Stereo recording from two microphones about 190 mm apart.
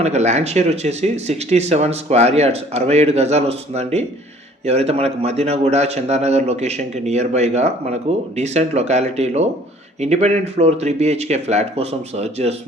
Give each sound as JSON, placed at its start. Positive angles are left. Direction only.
{"t": 0.0, "sound": "speech", "side_deg": -35}